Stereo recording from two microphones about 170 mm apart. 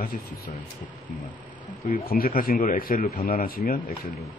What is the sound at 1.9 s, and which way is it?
A man's voice, 60° left (ahead or behind).